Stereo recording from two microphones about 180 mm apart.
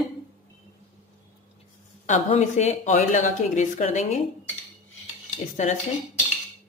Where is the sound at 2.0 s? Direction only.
40° left (ahead or behind).